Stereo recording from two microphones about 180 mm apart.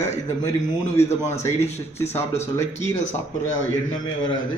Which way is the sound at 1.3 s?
15° left (ahead or behind).